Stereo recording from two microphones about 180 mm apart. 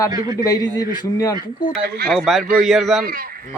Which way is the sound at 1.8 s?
60° right (ahead or behind).